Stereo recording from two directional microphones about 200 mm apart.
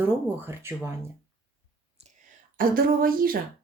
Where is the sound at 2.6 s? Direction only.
45° right (ahead or behind).